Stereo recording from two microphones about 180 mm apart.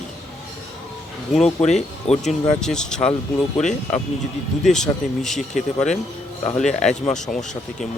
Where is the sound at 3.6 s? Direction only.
40° left (ahead or behind).